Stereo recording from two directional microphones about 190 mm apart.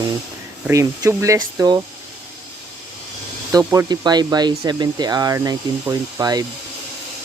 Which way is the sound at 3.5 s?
20° right (ahead or behind).